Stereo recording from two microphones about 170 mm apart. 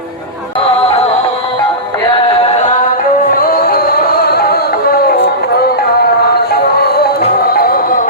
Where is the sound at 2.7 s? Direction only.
55° left (ahead or behind).